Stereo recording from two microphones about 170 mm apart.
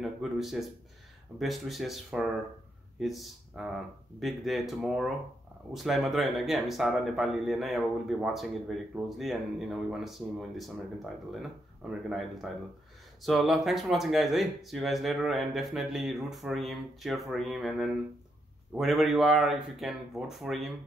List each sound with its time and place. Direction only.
0.0 s speech: centre (ahead or behind)
12.1 s speech: centre (ahead or behind)